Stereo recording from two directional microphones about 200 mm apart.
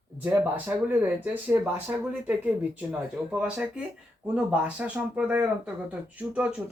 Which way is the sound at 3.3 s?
5° right (ahead or behind).